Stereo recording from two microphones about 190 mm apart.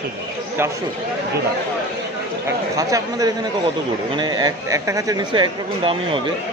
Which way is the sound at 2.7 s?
15° right (ahead or behind).